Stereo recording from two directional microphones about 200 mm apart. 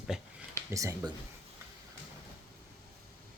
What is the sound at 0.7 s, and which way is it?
Speech, 15° right (ahead or behind).